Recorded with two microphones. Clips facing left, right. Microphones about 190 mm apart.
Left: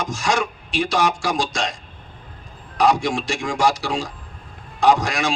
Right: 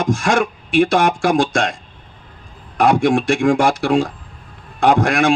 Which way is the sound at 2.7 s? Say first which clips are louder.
Right 5 dB; 55° right (ahead or behind).